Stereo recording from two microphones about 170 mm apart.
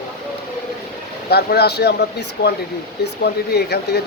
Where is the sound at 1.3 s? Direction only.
70° left (ahead or behind).